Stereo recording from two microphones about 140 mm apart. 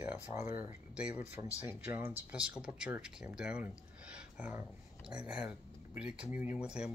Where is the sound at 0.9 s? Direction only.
10° right (ahead or behind).